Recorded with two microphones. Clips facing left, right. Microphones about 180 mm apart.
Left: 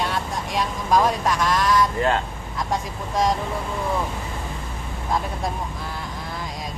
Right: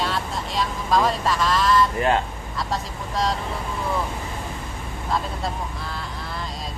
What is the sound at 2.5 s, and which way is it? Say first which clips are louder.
Speech: left 2 dB; 20° left (ahead or behind).